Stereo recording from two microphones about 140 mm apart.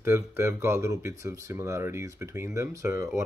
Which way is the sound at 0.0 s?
20° right (ahead or behind).